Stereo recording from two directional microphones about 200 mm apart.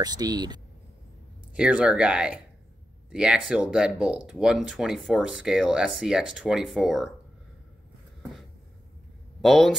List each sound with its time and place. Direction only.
0.0 s speech: 20° right (ahead or behind)
1.5 s speech: 5° right (ahead or behind)
9.4 s speech: centre (ahead or behind)